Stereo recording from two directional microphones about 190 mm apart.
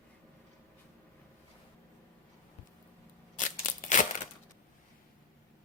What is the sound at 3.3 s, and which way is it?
Scissors, 40° left (ahead or behind).